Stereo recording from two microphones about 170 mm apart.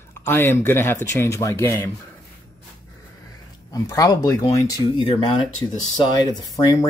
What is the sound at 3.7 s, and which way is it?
Speech, 20° left (ahead or behind).